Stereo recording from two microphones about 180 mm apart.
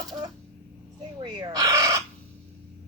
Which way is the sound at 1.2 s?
25° right (ahead or behind).